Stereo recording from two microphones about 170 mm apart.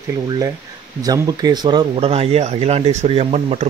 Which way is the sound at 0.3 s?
20° right (ahead or behind).